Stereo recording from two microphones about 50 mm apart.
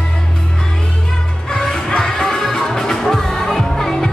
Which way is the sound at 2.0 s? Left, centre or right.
Centre.